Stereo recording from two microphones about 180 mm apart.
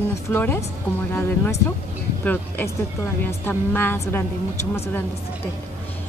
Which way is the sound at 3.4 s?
10° left (ahead or behind).